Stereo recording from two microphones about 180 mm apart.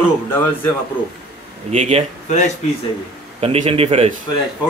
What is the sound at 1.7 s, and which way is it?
Speech, 35° right (ahead or behind).